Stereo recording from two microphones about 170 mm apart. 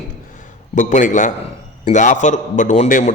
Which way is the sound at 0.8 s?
50° left (ahead or behind).